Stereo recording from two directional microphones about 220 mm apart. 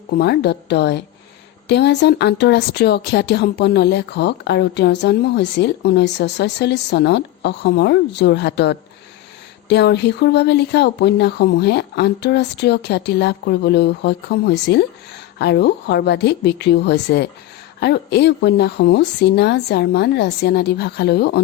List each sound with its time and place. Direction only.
0.2 s speech: 50° left (ahead or behind)